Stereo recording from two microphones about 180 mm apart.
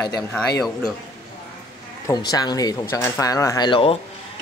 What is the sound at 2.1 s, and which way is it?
Speech, 20° left (ahead or behind).